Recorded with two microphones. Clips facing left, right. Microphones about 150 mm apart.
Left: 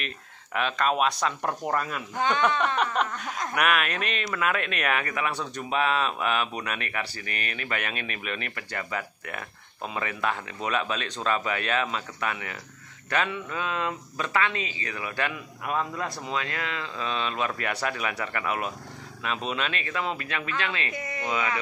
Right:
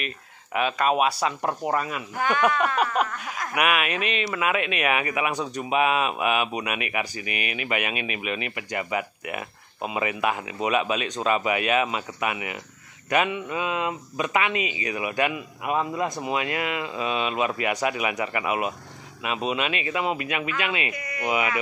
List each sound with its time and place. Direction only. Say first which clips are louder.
0.0 s speech: right 3 dB; 5° right (ahead or behind)
20.9 s speech: left 1 dB; 25° left (ahead or behind)
21.2 s speech: right 4 dB; 20° right (ahead or behind)